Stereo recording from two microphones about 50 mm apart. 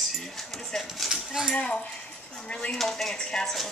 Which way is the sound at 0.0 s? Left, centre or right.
Centre.